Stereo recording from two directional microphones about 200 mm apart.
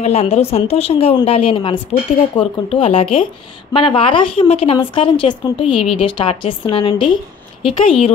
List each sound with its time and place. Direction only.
0.0 s a woman's voice: 30° left (ahead or behind)